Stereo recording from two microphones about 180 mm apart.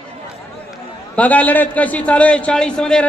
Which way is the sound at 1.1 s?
10° left (ahead or behind).